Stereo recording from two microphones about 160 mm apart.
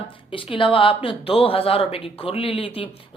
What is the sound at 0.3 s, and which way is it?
A woman's voice, 35° left (ahead or behind).